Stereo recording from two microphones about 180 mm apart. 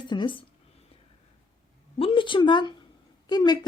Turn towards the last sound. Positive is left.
turn(degrees=25)  # may be behind; listen again after turning